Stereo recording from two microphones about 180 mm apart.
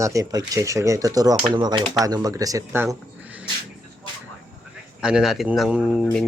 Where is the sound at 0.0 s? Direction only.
20° right (ahead or behind).